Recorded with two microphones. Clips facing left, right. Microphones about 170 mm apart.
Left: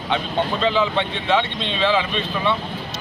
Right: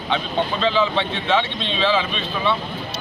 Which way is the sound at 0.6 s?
15° left (ahead or behind).